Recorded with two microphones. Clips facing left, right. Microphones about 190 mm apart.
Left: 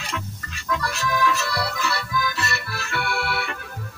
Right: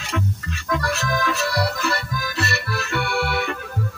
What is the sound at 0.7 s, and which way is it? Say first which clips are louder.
Music: right 2 dB; 45° right (ahead or behind).